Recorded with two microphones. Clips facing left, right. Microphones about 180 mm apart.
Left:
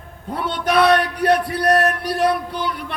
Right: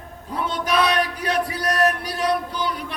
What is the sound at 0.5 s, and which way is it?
Music, 60° left (ahead or behind).